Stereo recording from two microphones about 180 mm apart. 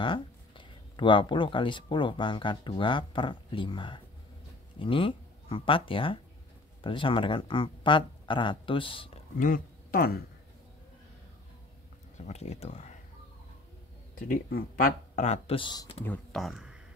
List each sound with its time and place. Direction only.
0.0 s speech: 30° left (ahead or behind)
9.4 s speech: 50° left (ahead or behind)
12.2 s speech: 35° left (ahead or behind)
14.1 s speech: 55° left (ahead or behind); by 16.0 s 25° left (ahead or behind)
16.0 s speech: 5° left (ahead or behind)